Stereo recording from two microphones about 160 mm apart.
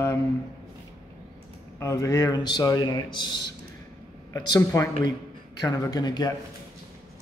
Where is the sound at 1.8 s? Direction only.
20° left (ahead or behind).